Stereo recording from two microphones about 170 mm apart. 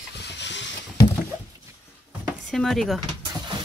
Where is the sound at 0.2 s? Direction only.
90° left.